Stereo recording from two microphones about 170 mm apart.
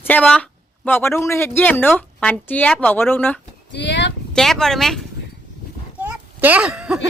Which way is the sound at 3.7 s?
90° left.